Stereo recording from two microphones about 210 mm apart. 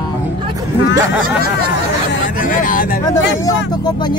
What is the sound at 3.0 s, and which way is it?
Speech, 15° left (ahead or behind).